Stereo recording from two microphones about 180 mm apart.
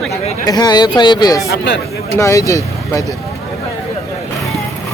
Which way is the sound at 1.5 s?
70° left (ahead or behind).